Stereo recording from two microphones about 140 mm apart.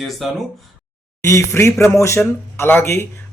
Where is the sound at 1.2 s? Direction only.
20° left (ahead or behind).